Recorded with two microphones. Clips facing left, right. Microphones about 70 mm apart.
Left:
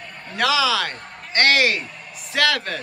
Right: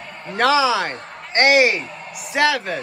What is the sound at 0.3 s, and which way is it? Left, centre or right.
Speech, right.